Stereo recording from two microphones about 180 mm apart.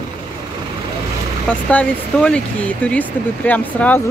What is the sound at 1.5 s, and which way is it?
Speech, 5° left (ahead or behind).